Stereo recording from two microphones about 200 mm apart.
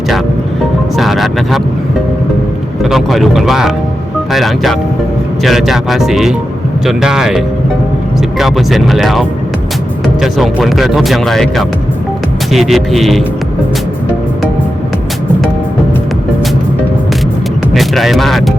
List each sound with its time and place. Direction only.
0.9 s speech: centre (ahead or behind)
2.8 s speech: centre (ahead or behind)
17.7 s speech: centre (ahead or behind)